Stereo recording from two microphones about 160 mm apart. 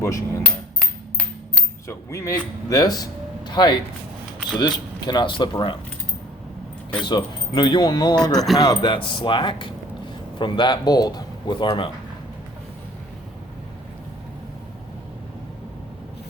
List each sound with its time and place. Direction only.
0.0 s speech: 20° left (ahead or behind)
1.9 s speech: 20° left (ahead or behind)
7.0 s speech: 25° left (ahead or behind)